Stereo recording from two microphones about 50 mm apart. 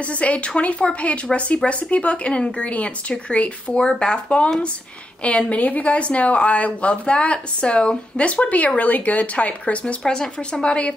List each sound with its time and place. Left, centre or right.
0.0 s speech: left
10.0 s speech: centre
10.6 s speech: left